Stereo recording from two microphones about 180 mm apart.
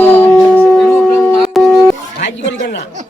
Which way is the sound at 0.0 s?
10° left (ahead or behind).